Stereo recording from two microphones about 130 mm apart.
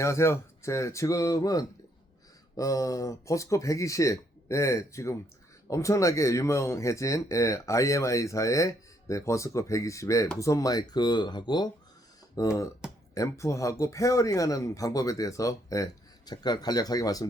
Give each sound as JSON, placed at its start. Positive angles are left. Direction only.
{"t": 0.0, "sound": "speech", "side_deg": 20}
{"t": 12.8, "sound": "music", "side_deg": -5}
{"t": 13.1, "sound": "speech", "side_deg": 25}